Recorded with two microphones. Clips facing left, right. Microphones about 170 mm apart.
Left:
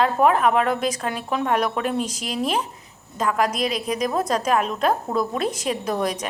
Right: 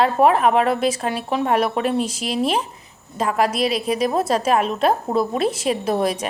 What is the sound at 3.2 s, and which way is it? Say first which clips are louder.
Speech: right 2 dB; 30° right (ahead or behind).